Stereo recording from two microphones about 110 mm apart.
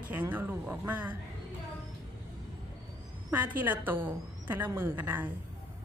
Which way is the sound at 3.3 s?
15° right (ahead or behind).